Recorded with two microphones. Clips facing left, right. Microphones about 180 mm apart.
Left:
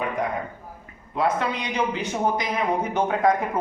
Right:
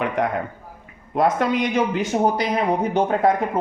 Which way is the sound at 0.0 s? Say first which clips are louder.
Right 4 dB; 75° right (ahead or behind).